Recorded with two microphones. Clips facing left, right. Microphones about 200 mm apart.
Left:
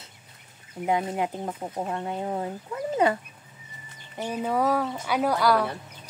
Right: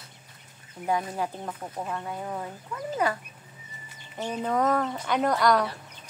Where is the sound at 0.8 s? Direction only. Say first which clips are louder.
Left 2 dB; 20° left (ahead or behind).